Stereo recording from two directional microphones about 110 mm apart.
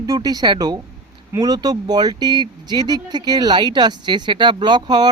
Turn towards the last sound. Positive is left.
turn(degrees=-40)  # may be behind; listen again after turning